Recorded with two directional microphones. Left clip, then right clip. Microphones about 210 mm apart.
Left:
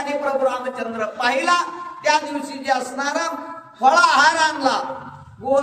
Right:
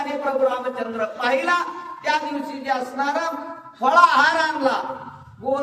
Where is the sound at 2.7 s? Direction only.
20° left (ahead or behind).